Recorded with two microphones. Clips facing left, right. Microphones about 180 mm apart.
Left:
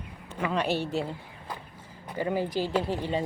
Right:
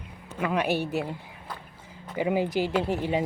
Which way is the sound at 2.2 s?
15° right (ahead or behind).